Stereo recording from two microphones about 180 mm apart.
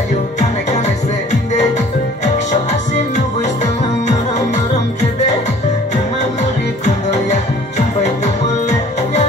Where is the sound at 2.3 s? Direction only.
40° left (ahead or behind).